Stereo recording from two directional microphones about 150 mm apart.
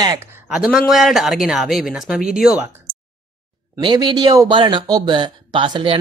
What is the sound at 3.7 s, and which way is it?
Speech, 30° right (ahead or behind).